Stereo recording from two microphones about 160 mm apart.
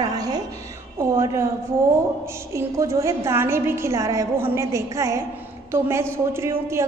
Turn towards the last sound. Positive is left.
turn(degrees=-15)  # may be behind; listen again after turning